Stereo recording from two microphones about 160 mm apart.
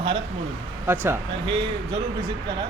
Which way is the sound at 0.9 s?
15° right (ahead or behind).